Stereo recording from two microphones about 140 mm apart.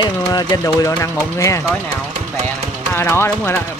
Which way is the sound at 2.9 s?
15° left (ahead or behind).